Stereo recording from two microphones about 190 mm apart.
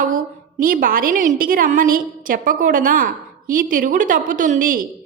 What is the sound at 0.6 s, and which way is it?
A woman's voice, 45° right (ahead or behind).